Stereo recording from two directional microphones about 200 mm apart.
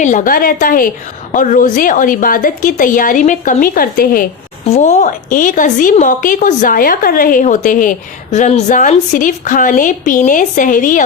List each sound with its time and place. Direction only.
0.0 s a woman's voice: 40° left (ahead or behind)
4.7 s a woman's voice: 35° left (ahead or behind)